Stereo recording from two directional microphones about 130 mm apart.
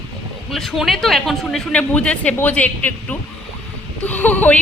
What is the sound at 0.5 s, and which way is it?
A woman's voice, centre (ahead or behind).